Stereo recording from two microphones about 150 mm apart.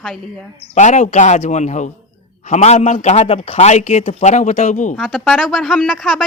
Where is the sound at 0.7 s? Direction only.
50° left (ahead or behind).